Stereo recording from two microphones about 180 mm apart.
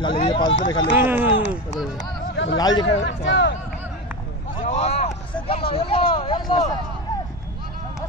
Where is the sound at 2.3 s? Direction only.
90° left.